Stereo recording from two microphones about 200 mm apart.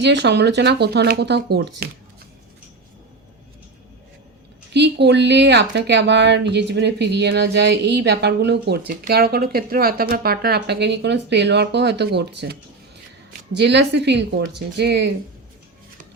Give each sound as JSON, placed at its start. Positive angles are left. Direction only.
{"t": 0.0, "sound": "speech", "side_deg": -60}
{"t": 4.7, "sound": "speech", "side_deg": -60}